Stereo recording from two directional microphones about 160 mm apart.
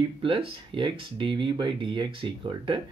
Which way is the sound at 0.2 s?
35° right (ahead or behind).